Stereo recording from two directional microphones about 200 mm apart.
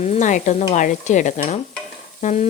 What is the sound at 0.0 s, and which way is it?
Speech, 35° left (ahead or behind).